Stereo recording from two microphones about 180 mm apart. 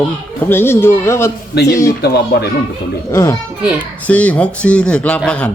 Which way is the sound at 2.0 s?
60° left (ahead or behind).